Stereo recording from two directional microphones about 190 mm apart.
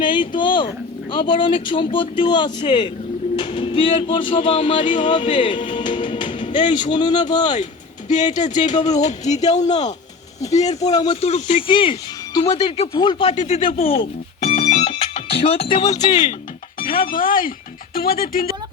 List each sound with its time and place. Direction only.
0.0 s a sound: 25° left (ahead or behind)
1.1 s speech: 25° left (ahead or behind)
3.3 s a sound: 25° left (ahead or behind)
4.9 s music: 25° left (ahead or behind)
6.8 s speech: 25° left (ahead or behind)
8.0 s speech: 40° left (ahead or behind); by 13.3 s 25° left (ahead or behind)
13.3 s music: 35° left (ahead or behind); by 16.1 s 20° left (ahead or behind)
16.8 s speech: 50° left (ahead or behind)